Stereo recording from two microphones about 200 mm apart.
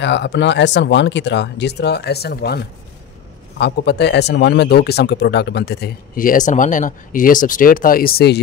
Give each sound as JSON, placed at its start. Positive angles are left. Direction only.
{"t": 0.0, "sound": "speech", "side_deg": 60}